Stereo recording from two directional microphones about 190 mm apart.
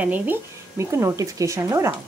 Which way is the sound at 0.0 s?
10° right (ahead or behind).